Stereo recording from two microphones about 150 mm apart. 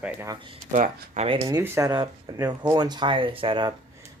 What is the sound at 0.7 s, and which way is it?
Speech, 55° right (ahead or behind).